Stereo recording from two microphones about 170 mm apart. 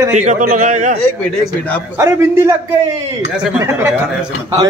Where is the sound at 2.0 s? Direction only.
15° right (ahead or behind).